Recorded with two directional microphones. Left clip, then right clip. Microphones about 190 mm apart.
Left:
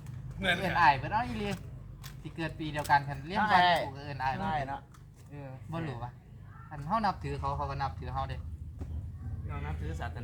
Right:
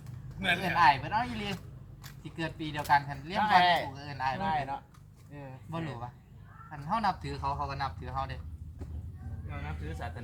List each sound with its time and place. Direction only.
0.6 s a man's voice: 10° right (ahead or behind)
3.4 s speech: 15° left (ahead or behind)
3.9 s a man's voice: 10° right (ahead or behind)
4.4 s speech: 15° left (ahead or behind)
5.7 s a man's voice: 10° right (ahead or behind)
9.5 s speech: 20° left (ahead or behind)